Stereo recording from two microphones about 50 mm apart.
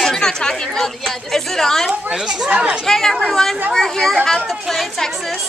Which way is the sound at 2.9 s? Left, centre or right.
Centre.